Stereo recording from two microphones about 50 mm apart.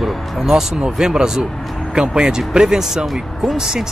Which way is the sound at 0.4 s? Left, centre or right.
Centre.